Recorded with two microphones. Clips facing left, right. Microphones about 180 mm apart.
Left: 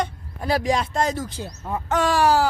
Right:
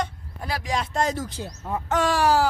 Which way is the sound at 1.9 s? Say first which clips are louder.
Left 2 dB; 40° left (ahead or behind).